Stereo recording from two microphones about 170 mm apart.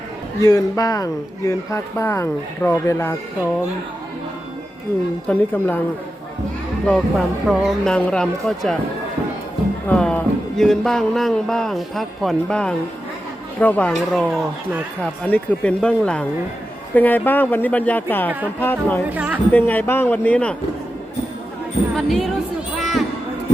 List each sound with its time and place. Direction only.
0.4 s speech: 20° left (ahead or behind)
5.3 s speech: 10° left (ahead or behind)
6.8 s music: 5° left (ahead or behind)
9.8 s music: 5° left (ahead or behind)
13.6 s speech: 10° left (ahead or behind)
19.0 s speech: 10° right (ahead or behind)
19.5 s speech: 10° left (ahead or behind)
21.9 s music: centre (ahead or behind)
22.8 s a sound: centre (ahead or behind)